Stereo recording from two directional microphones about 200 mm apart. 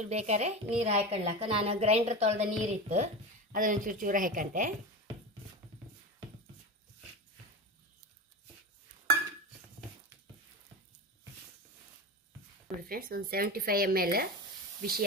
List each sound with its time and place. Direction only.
0.0 s a woman's voice: 35° right (ahead or behind)
12.6 s speech: 45° right (ahead or behind)